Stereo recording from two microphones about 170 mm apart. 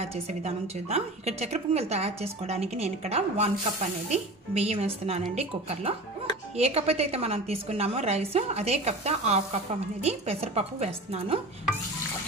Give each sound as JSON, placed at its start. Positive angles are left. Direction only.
{"t": 0.0, "sound": "a woman's voice", "side_deg": -40}